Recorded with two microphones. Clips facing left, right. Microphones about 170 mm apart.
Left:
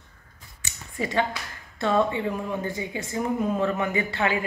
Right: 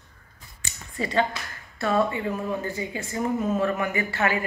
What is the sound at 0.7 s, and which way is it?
Finger snapping, 15° left (ahead or behind).